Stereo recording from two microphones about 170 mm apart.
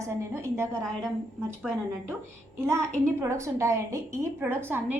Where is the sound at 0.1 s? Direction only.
15° right (ahead or behind).